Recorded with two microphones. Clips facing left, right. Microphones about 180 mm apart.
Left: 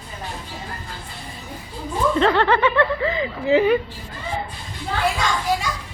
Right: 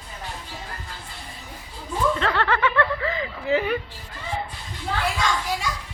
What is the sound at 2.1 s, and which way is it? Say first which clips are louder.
A woman's voice: left 6 dB; 25° left (ahead or behind).